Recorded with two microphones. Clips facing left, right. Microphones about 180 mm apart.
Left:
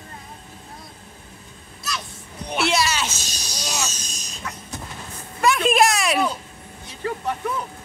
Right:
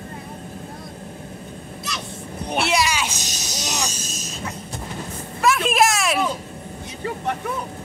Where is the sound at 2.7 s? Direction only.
10° right (ahead or behind).